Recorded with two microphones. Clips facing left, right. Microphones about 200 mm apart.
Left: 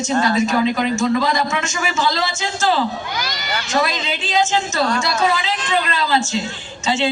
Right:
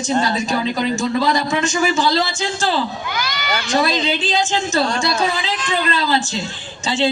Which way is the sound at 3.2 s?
35° left (ahead or behind).